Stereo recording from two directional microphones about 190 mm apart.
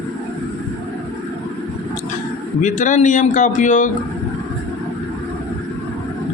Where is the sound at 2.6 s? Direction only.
40° left (ahead or behind).